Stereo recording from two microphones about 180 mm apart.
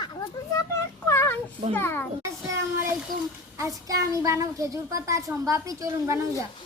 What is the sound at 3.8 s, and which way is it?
A child's voice, 20° right (ahead or behind).